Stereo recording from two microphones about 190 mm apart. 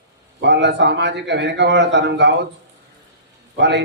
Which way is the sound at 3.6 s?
65° right (ahead or behind).